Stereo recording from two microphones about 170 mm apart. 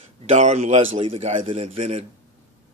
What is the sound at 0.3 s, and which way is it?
A man's voice, 40° right (ahead or behind).